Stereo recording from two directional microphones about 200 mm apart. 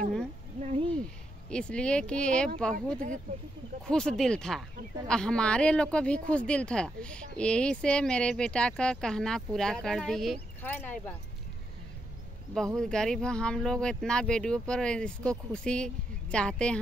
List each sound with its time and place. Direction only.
0.6 s a sound: 30° right (ahead or behind)
0.9 s speech: 5° left (ahead or behind)
12.5 s speech: centre (ahead or behind)